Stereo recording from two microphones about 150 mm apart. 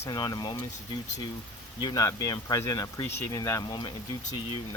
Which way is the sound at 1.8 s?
25° left (ahead or behind).